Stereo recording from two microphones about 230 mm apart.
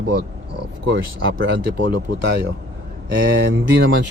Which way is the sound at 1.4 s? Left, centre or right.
Right.